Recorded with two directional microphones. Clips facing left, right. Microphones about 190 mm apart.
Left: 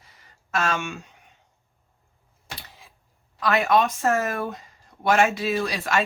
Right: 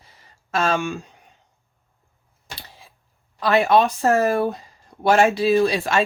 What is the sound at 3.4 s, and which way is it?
Speech, 30° right (ahead or behind).